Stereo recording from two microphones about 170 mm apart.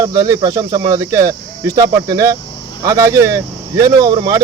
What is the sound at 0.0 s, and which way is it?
Speech, 20° right (ahead or behind).